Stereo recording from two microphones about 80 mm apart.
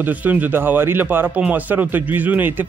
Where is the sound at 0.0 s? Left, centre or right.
Right.